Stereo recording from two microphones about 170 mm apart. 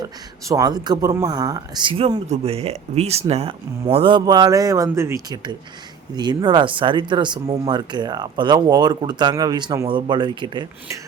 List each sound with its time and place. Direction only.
0.0 s speech: 20° right (ahead or behind)